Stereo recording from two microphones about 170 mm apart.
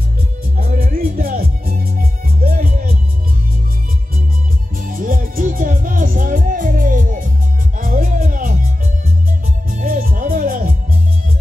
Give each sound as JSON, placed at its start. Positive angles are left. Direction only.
{"t": 0.6, "sound": "music", "side_deg": -55}
{"t": 4.7, "sound": "music", "side_deg": -55}